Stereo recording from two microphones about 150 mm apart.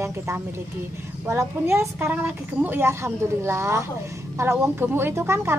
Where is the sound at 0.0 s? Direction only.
20° right (ahead or behind).